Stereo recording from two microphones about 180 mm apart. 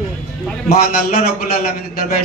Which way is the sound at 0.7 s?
55° left (ahead or behind).